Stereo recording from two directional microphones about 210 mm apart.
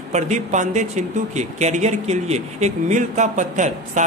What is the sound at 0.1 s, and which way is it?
Speech, 35° right (ahead or behind).